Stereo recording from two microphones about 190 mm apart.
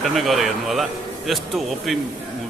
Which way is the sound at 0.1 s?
Centre (ahead or behind).